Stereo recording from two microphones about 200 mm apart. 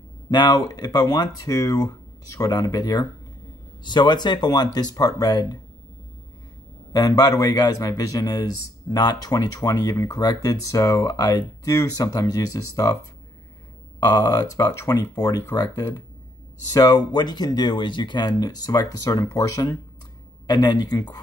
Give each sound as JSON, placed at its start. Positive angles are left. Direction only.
{"t": 0.3, "sound": "speech", "side_deg": 20}
{"t": 6.9, "sound": "speech", "side_deg": 20}
{"t": 13.9, "sound": "speech", "side_deg": 20}